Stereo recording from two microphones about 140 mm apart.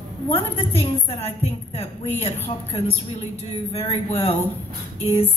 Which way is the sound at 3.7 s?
45° left (ahead or behind).